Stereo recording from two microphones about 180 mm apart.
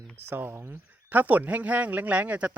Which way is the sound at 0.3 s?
10° right (ahead or behind).